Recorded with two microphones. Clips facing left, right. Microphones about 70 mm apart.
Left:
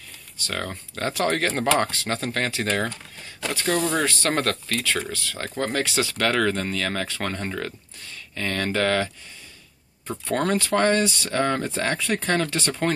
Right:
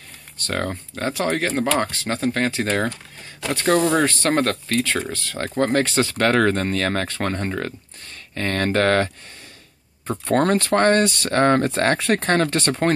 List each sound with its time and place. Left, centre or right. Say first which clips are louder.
0.4 s speech: right 5 dB; right
0.7 s speech: right 3 dB; right
1.9 s speech: right 4 dB; right
3.5 s speech: right 6 dB; right
5.1 s speech: right 5 dB; right
8.4 s speech: right 4 dB; right